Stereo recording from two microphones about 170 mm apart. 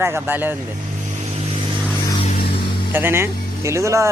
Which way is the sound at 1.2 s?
40° right (ahead or behind).